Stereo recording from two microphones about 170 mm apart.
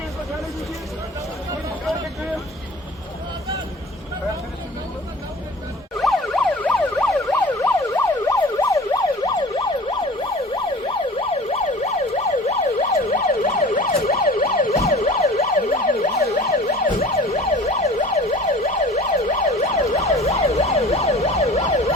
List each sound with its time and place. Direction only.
1.9 s vehicle: centre (ahead or behind)
6.0 s emergency vehicle: centre (ahead or behind)
7.3 s emergency vehicle: 15° left (ahead or behind)
11.4 s emergency vehicle: 40° left (ahead or behind)
15.7 s emergency vehicle: 50° left (ahead or behind)
16.2 s emergency vehicle: 40° left (ahead or behind)